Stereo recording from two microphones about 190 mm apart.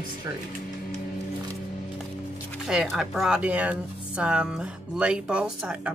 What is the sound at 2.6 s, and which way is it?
Speech, centre (ahead or behind).